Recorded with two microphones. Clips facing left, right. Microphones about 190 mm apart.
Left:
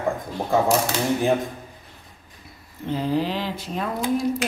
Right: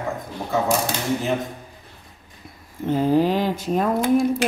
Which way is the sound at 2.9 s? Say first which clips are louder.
Right 5 dB; 50° right (ahead or behind).